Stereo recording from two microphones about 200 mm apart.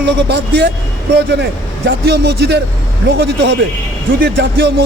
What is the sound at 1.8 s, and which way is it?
Speech, 60° right (ahead or behind).